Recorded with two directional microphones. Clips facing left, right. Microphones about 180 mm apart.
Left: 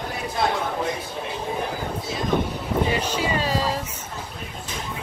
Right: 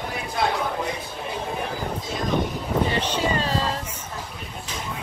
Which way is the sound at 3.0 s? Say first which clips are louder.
Even; 10° left (ahead or behind).